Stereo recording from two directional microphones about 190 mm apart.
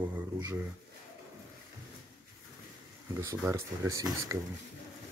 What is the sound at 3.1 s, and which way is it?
Speech, 15° right (ahead or behind).